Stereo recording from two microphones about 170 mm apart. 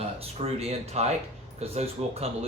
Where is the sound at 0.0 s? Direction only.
40° right (ahead or behind).